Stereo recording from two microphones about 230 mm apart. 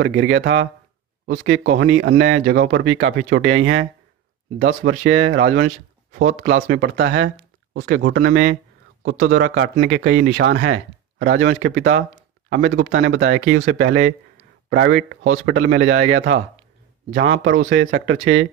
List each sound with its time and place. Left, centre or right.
0.0 s speech: right
11.4 s speech: right
12.9 s speech: right
13.2 s speech: right
13.7 s speech: right
15.2 s speech: right